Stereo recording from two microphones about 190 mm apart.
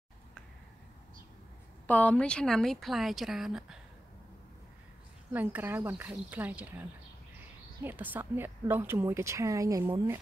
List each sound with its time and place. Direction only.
1.9 s a woman's voice: 10° left (ahead or behind)
5.3 s a woman's voice: 10° right (ahead or behind)